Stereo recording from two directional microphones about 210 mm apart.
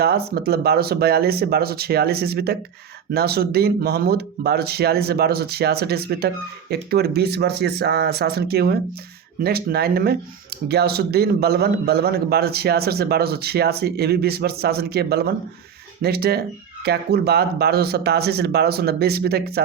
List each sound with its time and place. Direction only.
0.0 s speech: 50° right (ahead or behind)